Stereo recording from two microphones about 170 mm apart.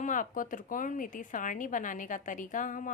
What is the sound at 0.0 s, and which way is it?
Speech, 50° left (ahead or behind).